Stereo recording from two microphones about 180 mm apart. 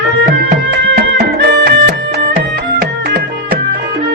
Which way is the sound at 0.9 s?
65° right (ahead or behind).